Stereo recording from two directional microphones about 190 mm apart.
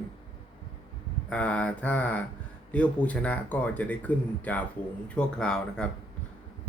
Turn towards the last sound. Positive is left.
turn(degrees=5)  # may be behind; listen again after turning